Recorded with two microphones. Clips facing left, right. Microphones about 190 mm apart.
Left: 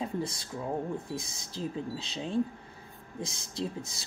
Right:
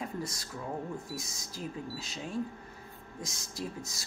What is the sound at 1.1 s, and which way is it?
Speech, 30° left (ahead or behind).